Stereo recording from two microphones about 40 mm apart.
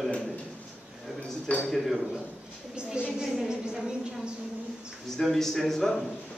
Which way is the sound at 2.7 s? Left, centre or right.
Right.